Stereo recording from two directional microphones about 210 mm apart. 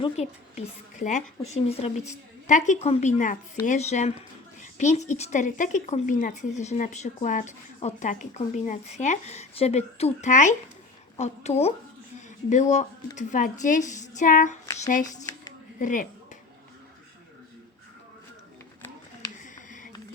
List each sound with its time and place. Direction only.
0.0 s speech: 30° left (ahead or behind)
15.0 s speech: 15° left (ahead or behind)
15.8 s speech: 40° left (ahead or behind)
19.4 s a sound: 35° left (ahead or behind)